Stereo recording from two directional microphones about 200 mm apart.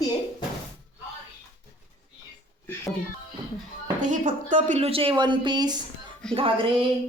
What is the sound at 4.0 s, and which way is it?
Speech, 40° right (ahead or behind).